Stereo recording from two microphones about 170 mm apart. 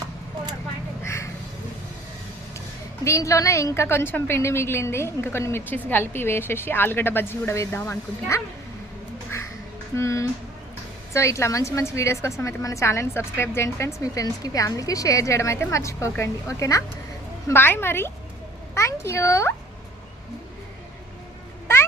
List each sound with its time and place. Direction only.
1.0 s a sound: 15° left (ahead or behind)
3.0 s a woman's voice: 20° left (ahead or behind)
9.9 s a woman's voice: 15° left (ahead or behind)